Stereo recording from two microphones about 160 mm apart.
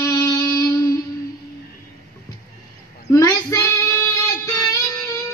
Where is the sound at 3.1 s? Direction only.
20° left (ahead or behind).